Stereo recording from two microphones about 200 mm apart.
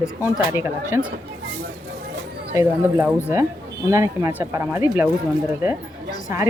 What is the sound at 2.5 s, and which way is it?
Speech, 15° right (ahead or behind).